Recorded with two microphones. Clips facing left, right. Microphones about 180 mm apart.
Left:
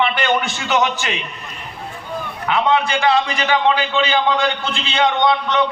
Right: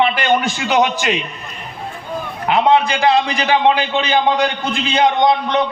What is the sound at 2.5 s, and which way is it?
A man's voice, 35° right (ahead or behind).